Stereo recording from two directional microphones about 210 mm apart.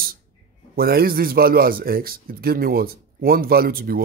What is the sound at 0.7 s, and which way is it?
Speech, 45° right (ahead or behind).